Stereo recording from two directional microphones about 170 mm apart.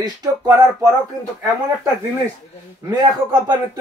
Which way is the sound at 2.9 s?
25° right (ahead or behind).